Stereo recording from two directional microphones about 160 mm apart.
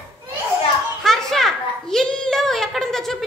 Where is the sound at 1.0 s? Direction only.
Centre (ahead or behind).